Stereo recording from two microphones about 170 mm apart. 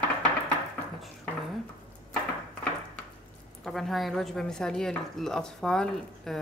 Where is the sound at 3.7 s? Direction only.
Centre (ahead or behind).